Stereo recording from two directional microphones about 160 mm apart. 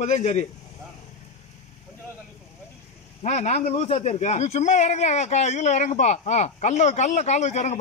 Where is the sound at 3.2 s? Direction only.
45° left (ahead or behind).